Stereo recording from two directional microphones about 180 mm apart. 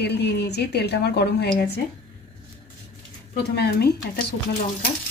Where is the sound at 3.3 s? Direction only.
60° left (ahead or behind).